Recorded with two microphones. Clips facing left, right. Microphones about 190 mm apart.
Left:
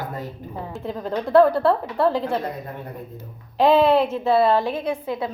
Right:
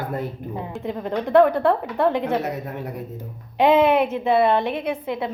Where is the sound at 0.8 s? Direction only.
15° right (ahead or behind).